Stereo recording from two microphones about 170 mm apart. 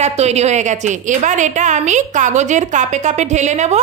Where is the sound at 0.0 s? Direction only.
40° right (ahead or behind).